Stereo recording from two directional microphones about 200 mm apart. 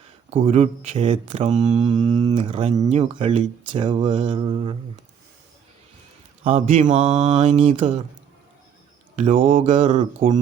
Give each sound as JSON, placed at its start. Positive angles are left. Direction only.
{"t": 0.3, "sound": "speech", "side_deg": -30}
{"t": 1.7, "sound": "speech", "side_deg": -25}
{"t": 6.4, "sound": "speech", "side_deg": -30}
{"t": 9.1, "sound": "speech", "side_deg": -35}